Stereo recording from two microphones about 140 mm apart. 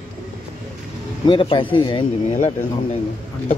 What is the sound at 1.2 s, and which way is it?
Speech, 40° left (ahead or behind).